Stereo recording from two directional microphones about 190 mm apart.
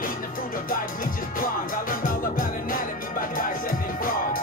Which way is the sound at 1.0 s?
45° left (ahead or behind).